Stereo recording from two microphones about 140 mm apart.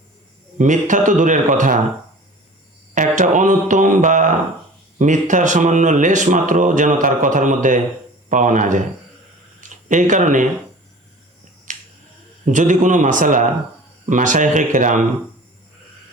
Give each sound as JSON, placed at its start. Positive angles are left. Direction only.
{"t": 0.6, "sound": "a man's voice", "side_deg": -65}
{"t": 2.9, "sound": "speech", "side_deg": -65}
{"t": 11.7, "sound": "finger snapping", "side_deg": -65}
{"t": 12.5, "sound": "speech", "side_deg": -65}